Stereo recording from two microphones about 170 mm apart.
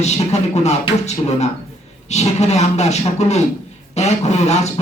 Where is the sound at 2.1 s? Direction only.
40° left (ahead or behind).